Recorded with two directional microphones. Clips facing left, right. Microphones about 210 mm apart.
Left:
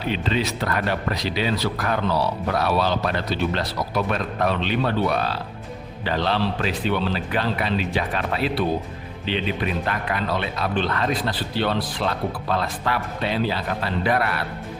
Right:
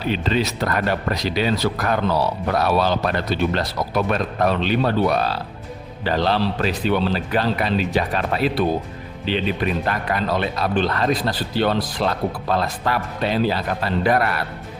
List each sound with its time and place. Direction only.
0.1 s a man's voice: 40° right (ahead or behind)
9.8 s a man's voice: 40° right (ahead or behind)